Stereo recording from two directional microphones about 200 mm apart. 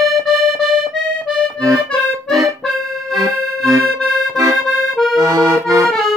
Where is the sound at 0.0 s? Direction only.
Centre (ahead or behind).